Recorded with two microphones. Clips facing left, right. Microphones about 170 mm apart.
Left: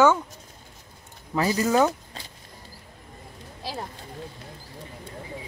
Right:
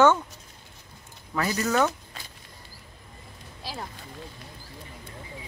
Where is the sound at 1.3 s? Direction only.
25° left (ahead or behind).